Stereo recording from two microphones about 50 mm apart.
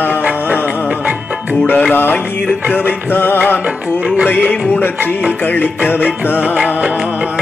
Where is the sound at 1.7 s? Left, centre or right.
Left.